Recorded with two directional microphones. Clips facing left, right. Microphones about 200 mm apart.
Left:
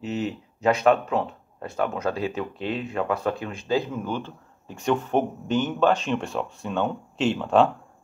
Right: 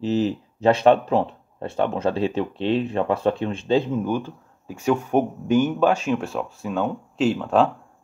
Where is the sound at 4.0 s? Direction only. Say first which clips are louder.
Right 5 dB; 10° right (ahead or behind).